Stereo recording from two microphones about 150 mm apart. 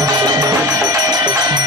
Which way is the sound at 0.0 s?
25° right (ahead or behind).